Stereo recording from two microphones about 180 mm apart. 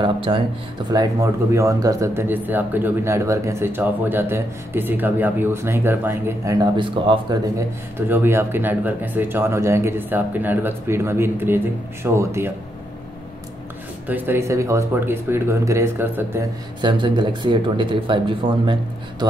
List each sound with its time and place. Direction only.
0.0 s speech: 30° right (ahead or behind)
0.9 s speech: 15° right (ahead or behind)
8.1 s speech: 15° right (ahead or behind)
14.0 s speech: 10° right (ahead or behind)
16.8 s speech: 25° right (ahead or behind)